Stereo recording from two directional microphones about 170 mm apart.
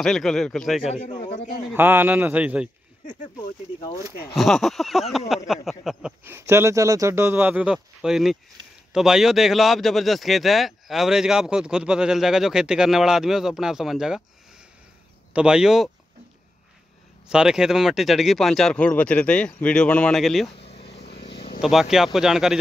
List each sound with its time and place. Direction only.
0.0 s speech: 5° left (ahead or behind)
1.7 s speech: 10° right (ahead or behind)
4.4 s speech: centre (ahead or behind)
6.2 s speech: 15° right (ahead or behind)
15.3 s speech: 5° right (ahead or behind)
17.3 s speech: 5° right (ahead or behind)
20.5 s vehicle: 35° left (ahead or behind)
21.3 s a sound: 80° left
21.5 s speech: centre (ahead or behind)